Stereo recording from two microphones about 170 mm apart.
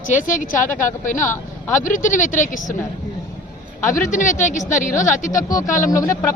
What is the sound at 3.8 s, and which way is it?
A woman's voice, 50° left (ahead or behind).